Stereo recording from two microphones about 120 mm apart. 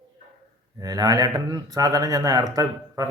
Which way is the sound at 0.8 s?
30° right (ahead or behind).